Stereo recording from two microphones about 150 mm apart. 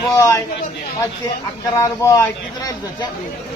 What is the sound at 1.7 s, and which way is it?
Speech, 20° left (ahead or behind).